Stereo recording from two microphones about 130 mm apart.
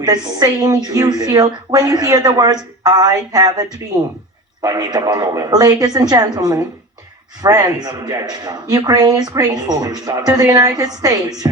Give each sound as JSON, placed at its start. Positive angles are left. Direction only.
{"t": 0.0, "sound": "a woman's voice", "side_deg": -30}